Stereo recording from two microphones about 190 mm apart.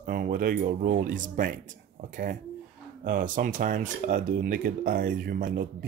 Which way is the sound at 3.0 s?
45° right (ahead or behind).